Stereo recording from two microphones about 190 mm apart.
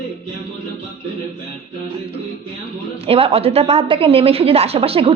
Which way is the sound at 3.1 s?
30° right (ahead or behind).